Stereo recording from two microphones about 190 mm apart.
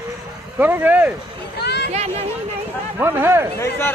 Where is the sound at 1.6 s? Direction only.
60° left (ahead or behind).